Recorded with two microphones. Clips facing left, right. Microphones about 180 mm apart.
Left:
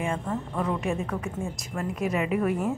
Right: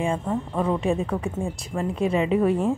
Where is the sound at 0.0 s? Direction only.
30° right (ahead or behind).